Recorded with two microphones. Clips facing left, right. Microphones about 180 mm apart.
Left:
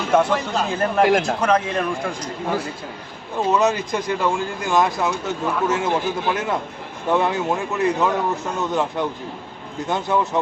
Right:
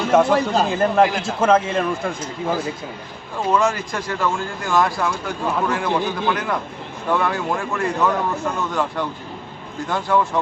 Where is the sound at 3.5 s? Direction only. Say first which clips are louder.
Even; 20° left (ahead or behind).